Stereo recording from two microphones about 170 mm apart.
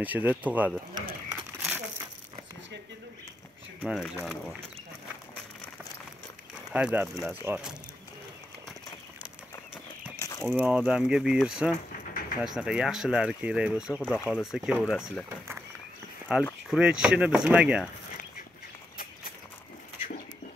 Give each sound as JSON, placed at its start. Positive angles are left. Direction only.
{"t": 0.0, "sound": "speech", "side_deg": -10}
{"t": 1.6, "sound": "crumpling", "side_deg": -10}
{"t": 3.8, "sound": "speech", "side_deg": 0}
{"t": 6.7, "sound": "speech", "side_deg": -10}
{"t": 10.5, "sound": "speech", "side_deg": -10}
{"t": 12.1, "sound": "vehicle", "side_deg": 55}
{"t": 12.4, "sound": "speech", "side_deg": -5}
{"t": 15.2, "sound": "a sound", "side_deg": -15}
{"t": 16.3, "sound": "speech", "side_deg": -5}